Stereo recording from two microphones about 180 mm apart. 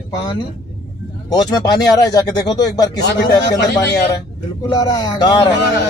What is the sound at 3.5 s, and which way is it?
Speech, 70° left (ahead or behind).